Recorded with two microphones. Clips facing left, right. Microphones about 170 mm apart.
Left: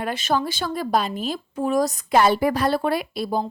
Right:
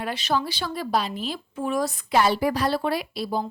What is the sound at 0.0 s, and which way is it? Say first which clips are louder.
A woman's voice: left 3 dB; 45° left (ahead or behind).